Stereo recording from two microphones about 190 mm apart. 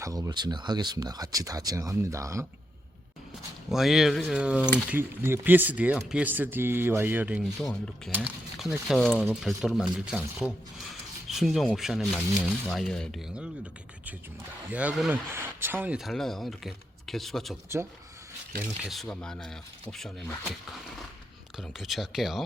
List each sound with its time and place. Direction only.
0.0 s speech: 20° right (ahead or behind)
3.7 s speech: centre (ahead or behind)
14.7 s speech: 5° right (ahead or behind)
18.8 s speech: centre (ahead or behind)
21.7 s speech: centre (ahead or behind)